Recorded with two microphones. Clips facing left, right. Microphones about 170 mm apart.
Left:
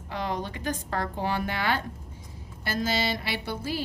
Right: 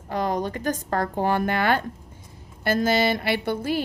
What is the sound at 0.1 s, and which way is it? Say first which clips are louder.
Speech: right 6 dB; 45° right (ahead or behind).